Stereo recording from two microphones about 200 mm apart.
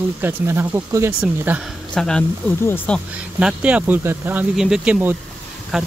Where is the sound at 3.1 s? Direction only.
5° right (ahead or behind).